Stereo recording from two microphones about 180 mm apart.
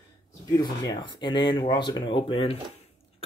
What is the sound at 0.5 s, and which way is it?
Speech, 25° left (ahead or behind).